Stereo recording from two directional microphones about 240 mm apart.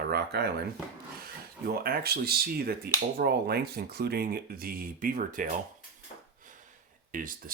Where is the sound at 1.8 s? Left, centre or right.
Right.